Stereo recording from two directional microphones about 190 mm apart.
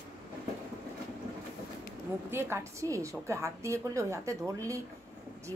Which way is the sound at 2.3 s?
15° right (ahead or behind).